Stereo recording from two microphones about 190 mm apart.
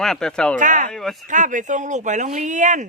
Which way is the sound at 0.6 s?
40° right (ahead or behind).